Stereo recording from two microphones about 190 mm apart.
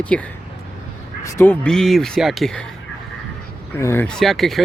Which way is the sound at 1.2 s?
10° left (ahead or behind).